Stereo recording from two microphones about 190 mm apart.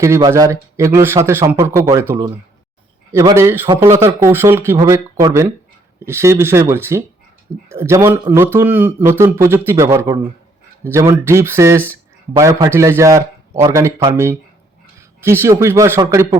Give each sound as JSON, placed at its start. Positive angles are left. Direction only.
{"t": 0.0, "sound": "a man's voice", "side_deg": -15}